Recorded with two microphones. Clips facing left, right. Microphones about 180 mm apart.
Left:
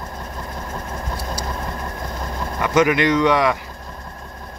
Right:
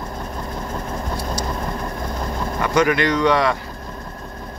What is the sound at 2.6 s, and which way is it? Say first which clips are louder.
Speech: left 1 dB; 15° left (ahead or behind).